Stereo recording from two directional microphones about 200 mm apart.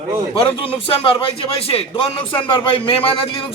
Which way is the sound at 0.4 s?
30° left (ahead or behind).